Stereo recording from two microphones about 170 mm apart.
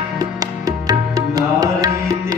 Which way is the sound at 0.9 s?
20° right (ahead or behind).